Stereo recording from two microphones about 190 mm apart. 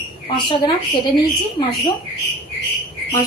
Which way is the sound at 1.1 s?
25° left (ahead or behind).